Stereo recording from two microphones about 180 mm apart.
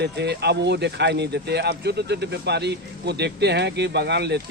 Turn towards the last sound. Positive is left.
turn(degrees=-70)  # may be behind; listen again after turning